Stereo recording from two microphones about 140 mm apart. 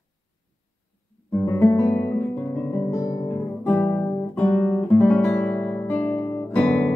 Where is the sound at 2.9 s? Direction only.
20° left (ahead or behind).